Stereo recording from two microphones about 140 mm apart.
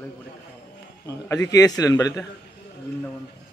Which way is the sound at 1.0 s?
25° left (ahead or behind).